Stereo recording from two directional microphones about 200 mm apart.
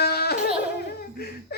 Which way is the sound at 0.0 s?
50° left (ahead or behind).